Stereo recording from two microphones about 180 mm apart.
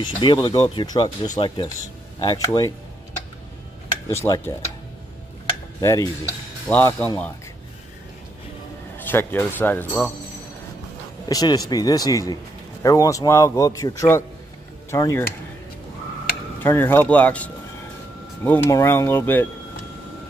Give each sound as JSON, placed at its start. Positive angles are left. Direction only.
{"t": 0.0, "sound": "speech", "side_deg": 25}
{"t": 4.1, "sound": "a man's voice", "side_deg": 15}
{"t": 5.8, "sound": "stir", "side_deg": 15}
{"t": 6.7, "sound": "a man's voice", "side_deg": 10}
{"t": 8.9, "sound": "a man's voice", "side_deg": 10}
{"t": 11.2, "sound": "a man's voice", "side_deg": 20}
{"t": 16.6, "sound": "a man's voice", "side_deg": 10}